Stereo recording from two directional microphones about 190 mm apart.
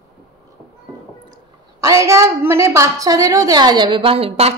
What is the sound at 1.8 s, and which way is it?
A woman's voice, 15° right (ahead or behind).